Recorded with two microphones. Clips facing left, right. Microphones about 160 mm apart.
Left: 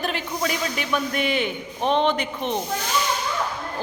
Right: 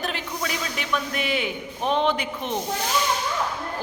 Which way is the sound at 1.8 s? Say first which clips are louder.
Left 2 dB; 20° left (ahead or behind).